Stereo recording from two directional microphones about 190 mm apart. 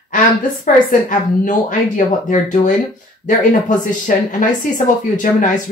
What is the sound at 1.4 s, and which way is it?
Speech, 45° left (ahead or behind).